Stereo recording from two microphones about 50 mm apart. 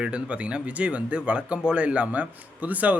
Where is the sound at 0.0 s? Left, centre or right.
Right.